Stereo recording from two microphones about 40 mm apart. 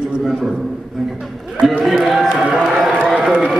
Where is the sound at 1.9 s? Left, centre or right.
Centre.